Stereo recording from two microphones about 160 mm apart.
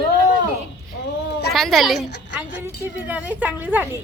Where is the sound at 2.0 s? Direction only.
90° left.